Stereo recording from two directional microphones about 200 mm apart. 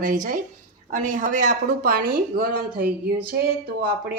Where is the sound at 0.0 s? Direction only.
40° right (ahead or behind).